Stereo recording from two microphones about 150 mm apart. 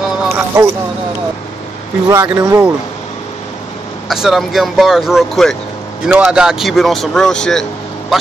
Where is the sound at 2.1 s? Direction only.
15° right (ahead or behind).